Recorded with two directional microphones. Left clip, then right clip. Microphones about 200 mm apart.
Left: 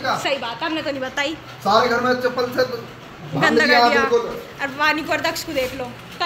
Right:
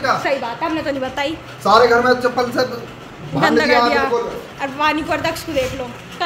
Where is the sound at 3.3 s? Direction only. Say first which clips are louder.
Right 1 dB; 5° right (ahead or behind).